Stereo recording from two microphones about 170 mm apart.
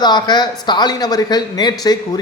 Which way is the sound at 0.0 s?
25° left (ahead or behind).